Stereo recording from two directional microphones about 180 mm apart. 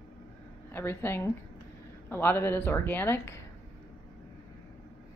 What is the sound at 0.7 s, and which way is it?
Speech, 10° left (ahead or behind).